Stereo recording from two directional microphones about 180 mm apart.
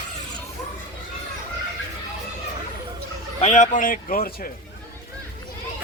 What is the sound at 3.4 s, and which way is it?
A man's voice, 40° left (ahead or behind).